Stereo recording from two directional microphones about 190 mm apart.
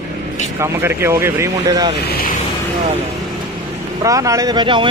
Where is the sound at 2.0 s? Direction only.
55° left (ahead or behind).